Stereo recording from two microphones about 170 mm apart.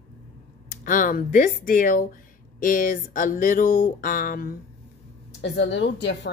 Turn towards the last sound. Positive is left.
turn(degrees=90)